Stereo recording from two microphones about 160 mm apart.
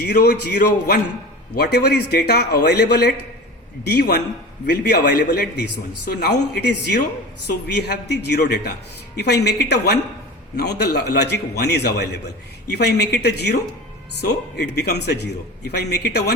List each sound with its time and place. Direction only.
0.0 s a man's voice: 90° left